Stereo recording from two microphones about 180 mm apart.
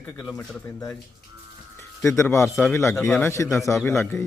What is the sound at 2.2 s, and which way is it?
Speech, 15° left (ahead or behind).